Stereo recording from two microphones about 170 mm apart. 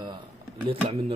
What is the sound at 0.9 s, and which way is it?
Stir, 35° right (ahead or behind).